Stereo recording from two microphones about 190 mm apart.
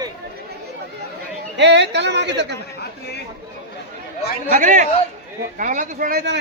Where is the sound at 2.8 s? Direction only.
60° left (ahead or behind).